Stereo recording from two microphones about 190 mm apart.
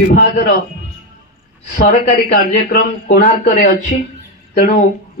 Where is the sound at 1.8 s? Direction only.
45° left (ahead or behind).